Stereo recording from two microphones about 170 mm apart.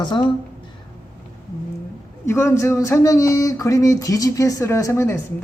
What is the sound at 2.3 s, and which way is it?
Speech, 15° left (ahead or behind).